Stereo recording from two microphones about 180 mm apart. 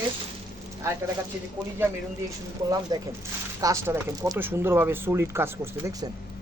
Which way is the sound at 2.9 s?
20° right (ahead or behind).